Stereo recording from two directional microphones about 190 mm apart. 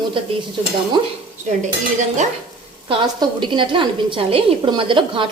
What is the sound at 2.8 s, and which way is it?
A woman's voice, 25° right (ahead or behind).